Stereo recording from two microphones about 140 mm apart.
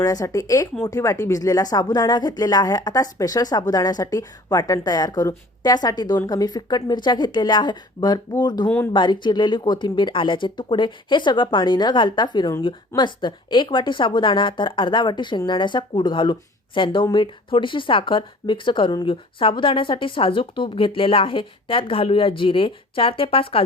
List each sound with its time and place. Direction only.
0.0 s a woman's voice: 25° left (ahead or behind); by 23.6 s 40° left (ahead or behind)